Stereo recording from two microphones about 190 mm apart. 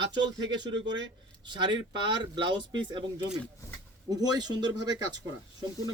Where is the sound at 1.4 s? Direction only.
25° right (ahead or behind).